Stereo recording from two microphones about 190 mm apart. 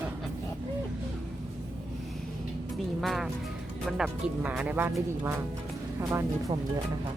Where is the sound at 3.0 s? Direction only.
Centre (ahead or behind).